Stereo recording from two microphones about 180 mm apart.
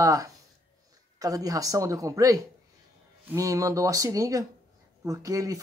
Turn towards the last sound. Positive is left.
turn(degrees=-20)  # may be behind; listen again after turning